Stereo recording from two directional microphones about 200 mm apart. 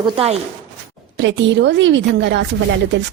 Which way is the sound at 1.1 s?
65° right (ahead or behind).